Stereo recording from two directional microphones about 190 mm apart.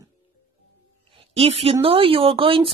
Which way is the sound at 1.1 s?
30° right (ahead or behind).